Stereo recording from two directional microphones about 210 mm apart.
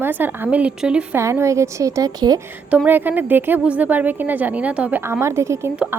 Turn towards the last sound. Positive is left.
turn(degrees=-10)  # may be behind; listen again after turning